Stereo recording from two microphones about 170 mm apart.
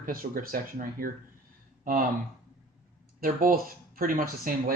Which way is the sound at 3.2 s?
55° right (ahead or behind).